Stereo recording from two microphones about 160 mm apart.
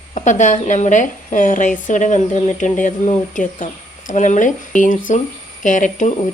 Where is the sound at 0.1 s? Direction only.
50° left (ahead or behind).